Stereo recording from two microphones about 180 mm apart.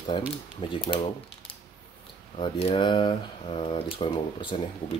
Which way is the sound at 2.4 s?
30° left (ahead or behind).